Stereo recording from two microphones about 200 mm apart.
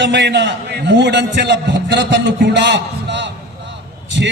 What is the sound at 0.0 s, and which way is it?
A man's voice, 60° right (ahead or behind).